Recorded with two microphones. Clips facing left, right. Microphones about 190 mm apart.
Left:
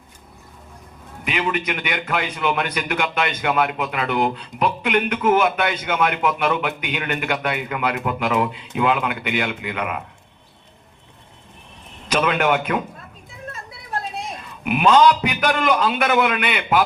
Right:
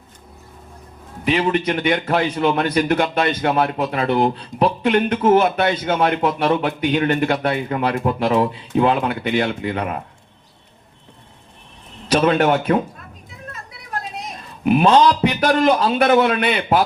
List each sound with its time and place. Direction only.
1.2 s a man's voice: 35° right (ahead or behind)
12.0 s a man's voice: 35° right (ahead or behind)
14.6 s a man's voice: 35° right (ahead or behind)